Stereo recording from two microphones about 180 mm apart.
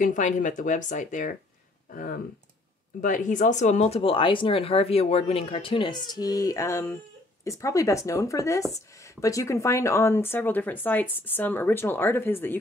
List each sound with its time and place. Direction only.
0.0 s speech: 45° left (ahead or behind); by 12.5 s 10° left (ahead or behind)